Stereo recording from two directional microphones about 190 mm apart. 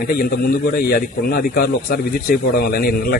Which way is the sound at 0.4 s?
50° left (ahead or behind).